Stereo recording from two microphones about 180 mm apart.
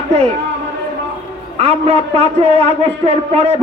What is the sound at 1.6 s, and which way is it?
A man's voice, 35° right (ahead or behind).